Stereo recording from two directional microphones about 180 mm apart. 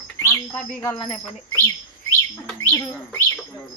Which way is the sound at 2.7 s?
15° left (ahead or behind).